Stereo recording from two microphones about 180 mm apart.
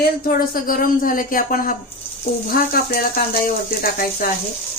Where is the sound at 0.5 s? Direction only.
50° left (ahead or behind).